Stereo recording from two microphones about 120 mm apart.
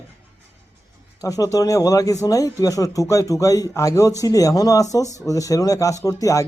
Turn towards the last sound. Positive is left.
turn(degrees=30)  # may be behind; listen again after turning